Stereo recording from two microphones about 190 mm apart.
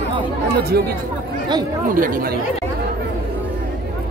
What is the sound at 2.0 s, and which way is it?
Speech, 45° right (ahead or behind).